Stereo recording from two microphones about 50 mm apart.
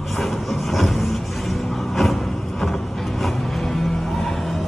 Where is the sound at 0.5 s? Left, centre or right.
Centre.